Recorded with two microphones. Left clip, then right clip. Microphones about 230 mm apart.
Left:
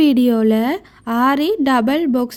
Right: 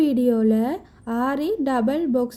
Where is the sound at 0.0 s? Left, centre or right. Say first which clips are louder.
Left 5 dB; left.